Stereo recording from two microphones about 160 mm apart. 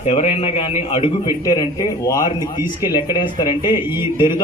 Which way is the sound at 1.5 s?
25° left (ahead or behind).